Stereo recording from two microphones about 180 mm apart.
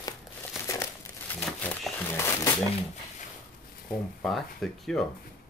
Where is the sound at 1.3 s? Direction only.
10° left (ahead or behind).